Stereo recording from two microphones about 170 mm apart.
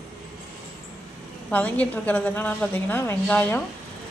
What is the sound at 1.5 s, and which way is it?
A woman's voice, 10° left (ahead or behind).